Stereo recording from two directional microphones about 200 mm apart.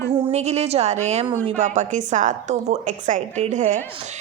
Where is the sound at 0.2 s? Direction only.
35° right (ahead or behind).